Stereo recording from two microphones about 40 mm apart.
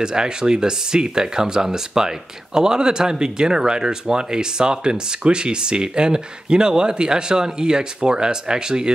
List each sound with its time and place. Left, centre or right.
0.0 s speech: centre